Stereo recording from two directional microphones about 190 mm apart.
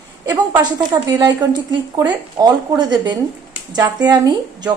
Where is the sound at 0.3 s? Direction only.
20° right (ahead or behind).